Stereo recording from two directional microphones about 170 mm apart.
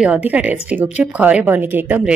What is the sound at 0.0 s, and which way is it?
Speech, 10° right (ahead or behind).